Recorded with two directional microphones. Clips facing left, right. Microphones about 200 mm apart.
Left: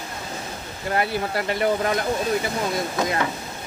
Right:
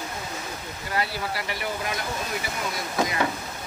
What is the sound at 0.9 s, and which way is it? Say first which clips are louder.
Speech: left 5 dB; 50° left (ahead or behind).